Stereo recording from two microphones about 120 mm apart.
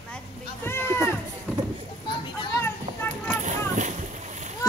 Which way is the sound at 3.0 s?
15° left (ahead or behind).